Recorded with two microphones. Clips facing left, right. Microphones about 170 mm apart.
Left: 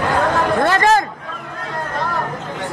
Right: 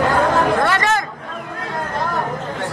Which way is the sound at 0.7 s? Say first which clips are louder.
Left 4 dB; 30° left (ahead or behind).